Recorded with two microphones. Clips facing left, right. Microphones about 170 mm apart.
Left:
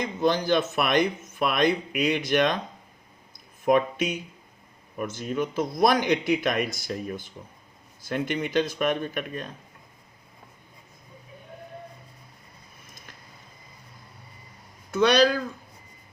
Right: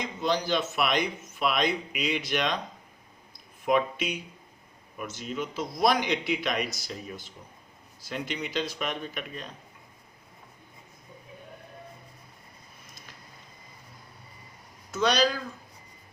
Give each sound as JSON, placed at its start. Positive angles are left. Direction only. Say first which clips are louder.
{"t": 0.0, "sound": "a man's voice", "louder": "left 4 dB", "side_deg": 50}
{"t": 3.7, "sound": "a man's voice", "louder": "left 4 dB", "side_deg": 50}
{"t": 14.9, "sound": "speech", "louder": "left 5 dB", "side_deg": 60}